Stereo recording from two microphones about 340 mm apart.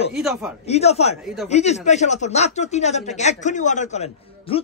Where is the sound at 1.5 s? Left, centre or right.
Centre.